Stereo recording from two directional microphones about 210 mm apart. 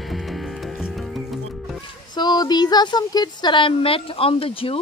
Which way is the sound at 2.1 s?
20° left (ahead or behind).